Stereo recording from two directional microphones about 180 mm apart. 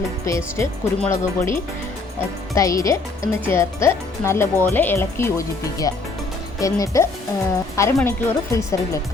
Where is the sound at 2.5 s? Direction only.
20° left (ahead or behind).